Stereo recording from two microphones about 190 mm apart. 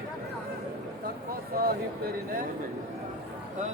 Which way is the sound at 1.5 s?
50° right (ahead or behind).